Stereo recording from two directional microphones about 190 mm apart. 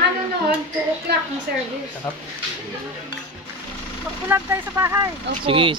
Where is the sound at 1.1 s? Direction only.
60° right (ahead or behind).